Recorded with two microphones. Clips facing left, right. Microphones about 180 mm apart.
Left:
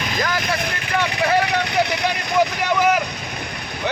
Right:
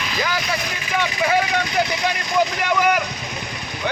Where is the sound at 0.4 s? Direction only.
55° left (ahead or behind).